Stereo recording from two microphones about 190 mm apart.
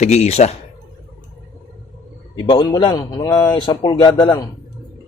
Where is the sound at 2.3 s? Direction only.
20° left (ahead or behind).